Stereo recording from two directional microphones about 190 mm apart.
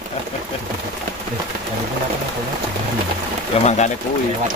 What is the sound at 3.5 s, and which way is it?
Speech, 35° left (ahead or behind).